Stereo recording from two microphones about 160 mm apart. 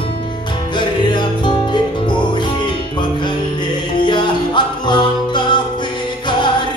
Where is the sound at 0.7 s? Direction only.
30° left (ahead or behind).